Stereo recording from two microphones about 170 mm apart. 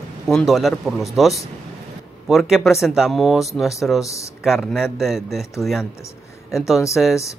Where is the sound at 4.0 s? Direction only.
20° left (ahead or behind).